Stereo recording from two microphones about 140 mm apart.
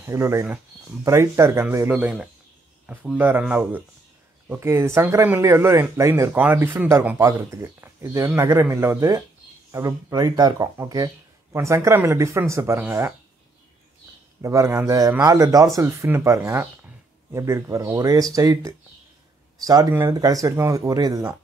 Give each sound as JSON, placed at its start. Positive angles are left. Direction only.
{"t": 0.0, "sound": "speech", "side_deg": -20}
{"t": 14.4, "sound": "speech", "side_deg": -20}